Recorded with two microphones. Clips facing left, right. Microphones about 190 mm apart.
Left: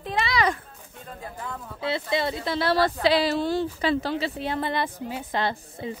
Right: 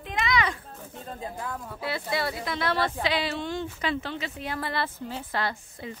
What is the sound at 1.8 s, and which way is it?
A woman's voice, 25° left (ahead or behind).